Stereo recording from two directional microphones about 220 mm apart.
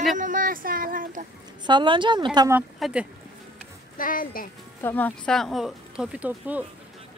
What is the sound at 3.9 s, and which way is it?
Speech, 40° left (ahead or behind).